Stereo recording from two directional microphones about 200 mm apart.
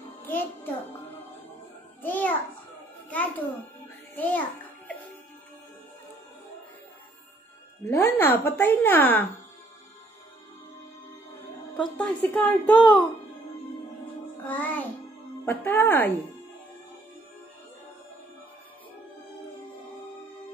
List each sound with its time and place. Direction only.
0.3 s a child's voice: 10° left (ahead or behind)
2.0 s a sound: 10° left (ahead or behind)
3.1 s music: 10° left (ahead or behind)
4.1 s a child's voice: 10° left (ahead or behind)
7.8 s speech: 10° left (ahead or behind)
11.7 s speech: 5° left (ahead or behind)
14.5 s speech: 10° left (ahead or behind)